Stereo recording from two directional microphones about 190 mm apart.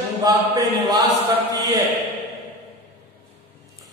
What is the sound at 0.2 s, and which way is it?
Mantra, 20° right (ahead or behind).